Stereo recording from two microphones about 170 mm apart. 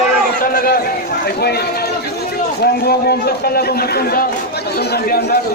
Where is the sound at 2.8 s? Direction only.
65° left (ahead or behind).